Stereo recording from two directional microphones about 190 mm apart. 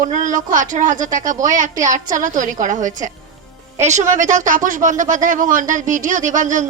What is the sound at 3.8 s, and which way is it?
A woman's voice, 40° right (ahead or behind).